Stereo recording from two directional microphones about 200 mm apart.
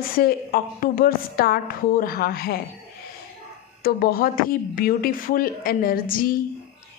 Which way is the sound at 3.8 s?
45° left (ahead or behind).